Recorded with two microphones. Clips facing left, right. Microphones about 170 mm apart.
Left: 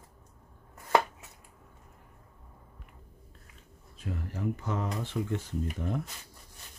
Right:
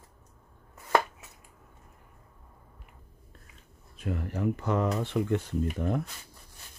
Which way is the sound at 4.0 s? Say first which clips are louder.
Right 4 dB; 65° right (ahead or behind).